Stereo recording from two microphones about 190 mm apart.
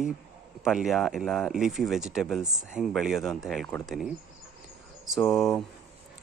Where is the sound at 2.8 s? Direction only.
Centre (ahead or behind).